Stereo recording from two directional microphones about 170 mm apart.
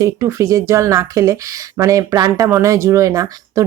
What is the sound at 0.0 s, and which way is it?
Speech, 15° right (ahead or behind).